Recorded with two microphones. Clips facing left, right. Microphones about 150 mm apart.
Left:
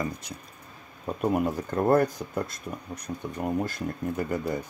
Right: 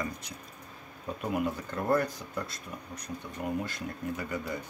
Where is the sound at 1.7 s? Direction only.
50° left (ahead or behind).